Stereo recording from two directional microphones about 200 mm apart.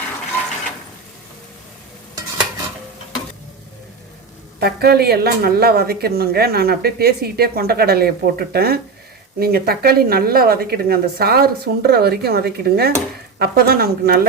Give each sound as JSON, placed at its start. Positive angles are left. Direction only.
{"t": 4.6, "sound": "a woman's voice", "side_deg": -50}